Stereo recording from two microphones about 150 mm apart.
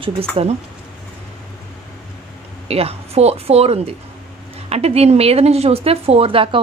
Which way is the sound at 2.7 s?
40° right (ahead or behind).